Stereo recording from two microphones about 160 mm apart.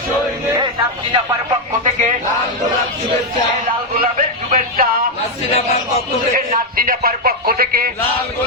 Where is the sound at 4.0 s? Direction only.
60° right (ahead or behind).